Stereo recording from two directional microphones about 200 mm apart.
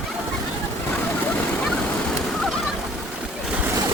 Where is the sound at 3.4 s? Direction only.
5° right (ahead or behind).